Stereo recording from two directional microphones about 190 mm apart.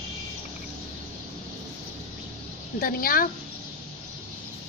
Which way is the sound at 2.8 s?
50° left (ahead or behind).